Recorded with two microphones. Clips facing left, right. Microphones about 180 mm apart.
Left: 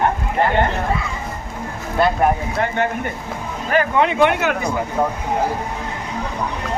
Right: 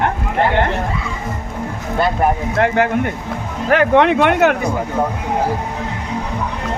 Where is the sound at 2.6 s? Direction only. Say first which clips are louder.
Right 9 dB; 80° right; by 4.6 s 60° right (ahead or behind).